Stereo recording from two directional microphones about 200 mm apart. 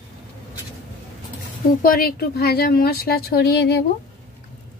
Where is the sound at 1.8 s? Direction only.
45° left (ahead or behind).